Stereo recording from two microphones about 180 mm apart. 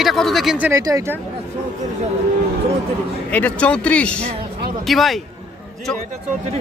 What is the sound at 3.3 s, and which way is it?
A man's voice, 5° left (ahead or behind).